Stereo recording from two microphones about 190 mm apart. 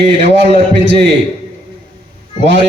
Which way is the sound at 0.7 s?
65° right (ahead or behind).